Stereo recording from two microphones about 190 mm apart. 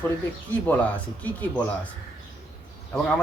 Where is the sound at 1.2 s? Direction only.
10° left (ahead or behind).